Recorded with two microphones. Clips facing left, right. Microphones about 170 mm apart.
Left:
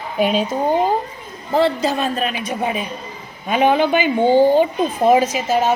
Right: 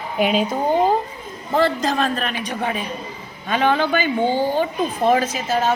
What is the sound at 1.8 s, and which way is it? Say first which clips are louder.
A woman's voice: left 1 dB; 5° left (ahead or behind).